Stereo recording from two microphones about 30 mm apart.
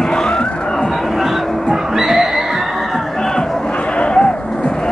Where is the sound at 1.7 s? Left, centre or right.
Centre.